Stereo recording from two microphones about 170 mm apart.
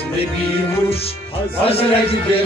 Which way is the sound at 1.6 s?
35° left (ahead or behind).